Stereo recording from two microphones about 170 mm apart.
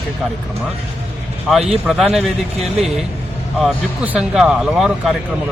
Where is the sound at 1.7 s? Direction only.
Centre (ahead or behind).